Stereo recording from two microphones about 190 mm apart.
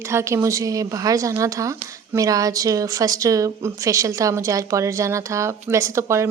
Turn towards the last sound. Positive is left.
turn(degrees=-15)  # may be behind; listen again after turning